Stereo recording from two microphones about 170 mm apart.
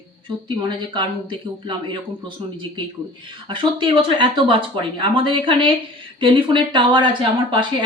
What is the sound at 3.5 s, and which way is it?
Speech, 30° right (ahead or behind).